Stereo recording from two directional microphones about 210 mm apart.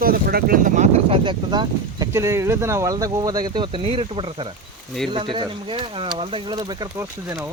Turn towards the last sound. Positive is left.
turn(degrees=-15)  # may be behind; listen again after turning